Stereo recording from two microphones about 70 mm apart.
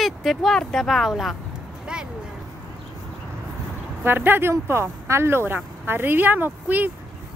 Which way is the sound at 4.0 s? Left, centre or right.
Right.